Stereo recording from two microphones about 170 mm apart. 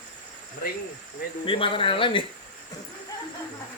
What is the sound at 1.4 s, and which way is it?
Speech, 30° left (ahead or behind).